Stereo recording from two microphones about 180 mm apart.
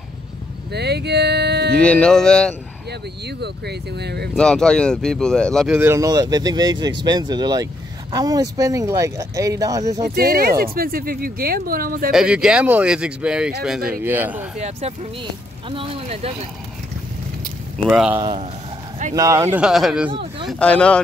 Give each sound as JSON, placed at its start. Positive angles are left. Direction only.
{"t": 0.7, "sound": "music", "side_deg": -65}
{"t": 1.8, "sound": "speech", "side_deg": 5}
{"t": 2.9, "sound": "speech", "side_deg": -65}
{"t": 4.4, "sound": "speech", "side_deg": 5}
{"t": 5.8, "sound": "speech", "side_deg": -15}
{"t": 10.0, "sound": "speech", "side_deg": -55}
{"t": 12.1, "sound": "speech", "side_deg": -5}
{"t": 14.6, "sound": "speech", "side_deg": -35}
{"t": 17.8, "sound": "speech", "side_deg": -5}
{"t": 18.2, "sound": "speech", "side_deg": -30}
{"t": 19.1, "sound": "speech", "side_deg": -15}
{"t": 20.1, "sound": "speech", "side_deg": -30}
{"t": 20.4, "sound": "speech", "side_deg": 5}